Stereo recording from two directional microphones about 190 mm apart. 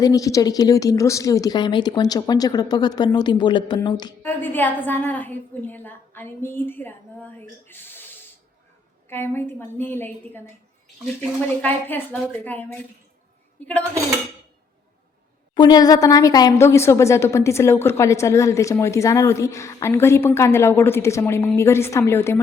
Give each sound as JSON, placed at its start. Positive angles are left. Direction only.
{"t": 0.0, "sound": "a woman's voice", "side_deg": 20}
{"t": 4.2, "sound": "a woman's voice", "side_deg": 10}
{"t": 11.6, "sound": "a woman's voice", "side_deg": 10}
{"t": 15.5, "sound": "a woman's voice", "side_deg": 20}